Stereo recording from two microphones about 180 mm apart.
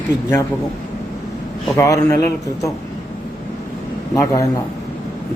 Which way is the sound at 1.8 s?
20° left (ahead or behind).